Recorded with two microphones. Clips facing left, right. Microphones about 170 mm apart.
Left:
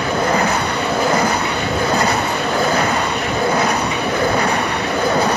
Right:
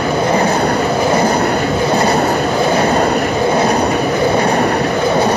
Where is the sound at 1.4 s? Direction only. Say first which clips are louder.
Right 6 dB; 50° right (ahead or behind).